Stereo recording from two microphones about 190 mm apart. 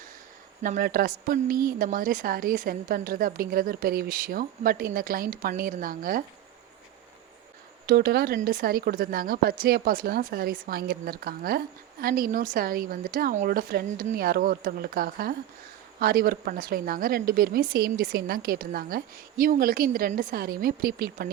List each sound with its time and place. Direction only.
0.6 s a woman's voice: 45° right (ahead or behind)
7.9 s a woman's voice: 55° right (ahead or behind)